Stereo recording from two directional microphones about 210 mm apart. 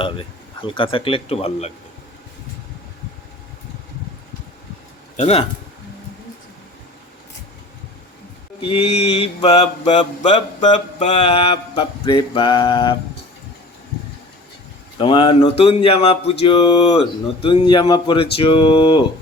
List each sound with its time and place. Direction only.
0.0 s speech: 25° left (ahead or behind)
5.1 s a man's voice: 30° left (ahead or behind)
8.6 s speech: 25° left (ahead or behind)
14.9 s speech: 25° left (ahead or behind)